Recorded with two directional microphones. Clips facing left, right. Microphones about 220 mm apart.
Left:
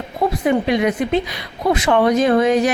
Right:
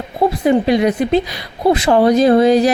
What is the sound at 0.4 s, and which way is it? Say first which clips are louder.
A woman's voice: right 4 dB; 35° right (ahead or behind).